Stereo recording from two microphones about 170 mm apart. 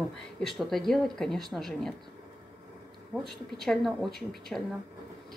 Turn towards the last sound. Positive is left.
turn(degrees=0)  # may be behind; listen again after turning